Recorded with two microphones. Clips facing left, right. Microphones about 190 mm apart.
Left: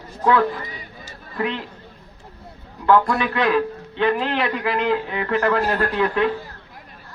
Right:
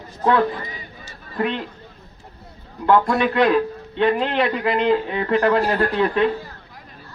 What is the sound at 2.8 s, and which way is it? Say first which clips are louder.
A man's voice: right 1 dB; 20° right (ahead or behind).